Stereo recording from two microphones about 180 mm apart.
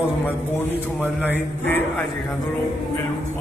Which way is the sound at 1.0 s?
10° right (ahead or behind).